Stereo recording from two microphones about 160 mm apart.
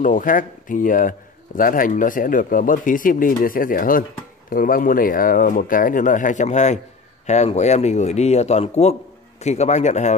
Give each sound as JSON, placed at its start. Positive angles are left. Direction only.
{"t": 0.0, "sound": "a man's voice", "side_deg": 55}